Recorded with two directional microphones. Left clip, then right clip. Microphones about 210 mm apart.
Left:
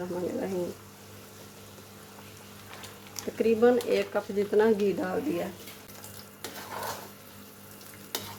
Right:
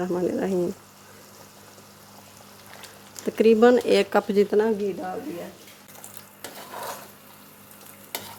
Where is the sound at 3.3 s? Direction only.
55° right (ahead or behind).